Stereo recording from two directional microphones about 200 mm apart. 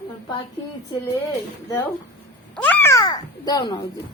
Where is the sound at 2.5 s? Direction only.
10° left (ahead or behind).